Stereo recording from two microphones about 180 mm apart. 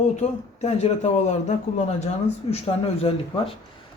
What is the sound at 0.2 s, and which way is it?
A woman's voice, 40° left (ahead or behind).